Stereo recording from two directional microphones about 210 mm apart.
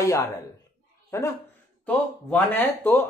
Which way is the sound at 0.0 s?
15° left (ahead or behind).